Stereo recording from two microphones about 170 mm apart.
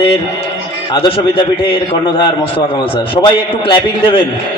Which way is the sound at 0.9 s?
30° left (ahead or behind).